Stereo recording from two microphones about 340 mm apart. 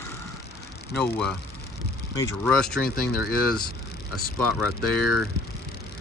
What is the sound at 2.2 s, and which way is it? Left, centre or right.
Speech, centre.